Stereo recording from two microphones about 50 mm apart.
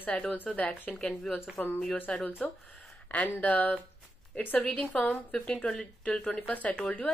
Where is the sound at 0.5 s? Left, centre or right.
Left.